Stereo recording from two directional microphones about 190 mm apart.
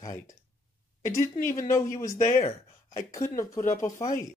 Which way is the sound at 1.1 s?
15° left (ahead or behind).